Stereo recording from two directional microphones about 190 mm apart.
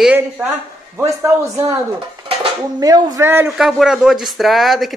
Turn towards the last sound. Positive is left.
turn(degrees=0)  # may be behind; listen again after turning